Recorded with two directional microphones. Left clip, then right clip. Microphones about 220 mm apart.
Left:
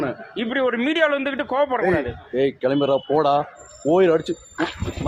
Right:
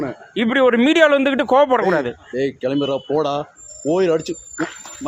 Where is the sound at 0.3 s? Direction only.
50° right (ahead or behind).